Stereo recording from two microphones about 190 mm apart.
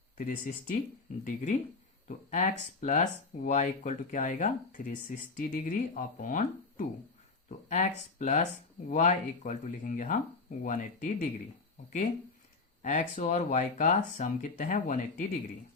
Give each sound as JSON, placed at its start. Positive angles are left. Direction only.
{"t": 0.2, "sound": "speech", "side_deg": 40}
{"t": 12.8, "sound": "speech", "side_deg": 40}